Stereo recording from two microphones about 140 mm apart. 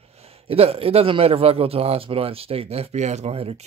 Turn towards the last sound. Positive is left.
turn(degrees=-45)  # may be behind; listen again after turning